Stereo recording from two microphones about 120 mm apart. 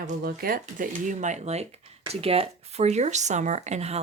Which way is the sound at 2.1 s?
55° right (ahead or behind).